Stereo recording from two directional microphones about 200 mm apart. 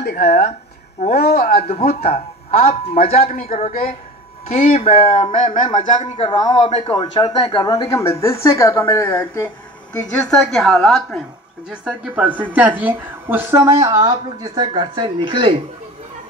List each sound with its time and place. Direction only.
0.0 s a man's voice: 50° left (ahead or behind)
1.7 s speech: 30° left (ahead or behind)
3.1 s a man's voice: 45° left (ahead or behind)
3.4 s a woman's voice: 35° left (ahead or behind); by 9.5 s 10° left (ahead or behind)
10.2 s a woman's voice: centre (ahead or behind); by 15.5 s 25° right (ahead or behind)